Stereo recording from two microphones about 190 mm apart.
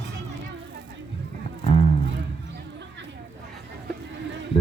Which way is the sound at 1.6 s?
30° left (ahead or behind).